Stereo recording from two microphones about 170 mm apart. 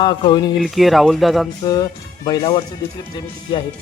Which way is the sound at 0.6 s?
Centre (ahead or behind).